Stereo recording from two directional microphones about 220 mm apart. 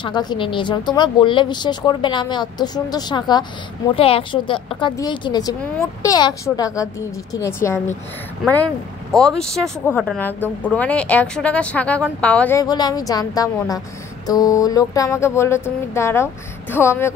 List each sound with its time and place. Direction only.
0.0 s a woman's voice: 20° left (ahead or behind)
9.1 s speech: centre (ahead or behind)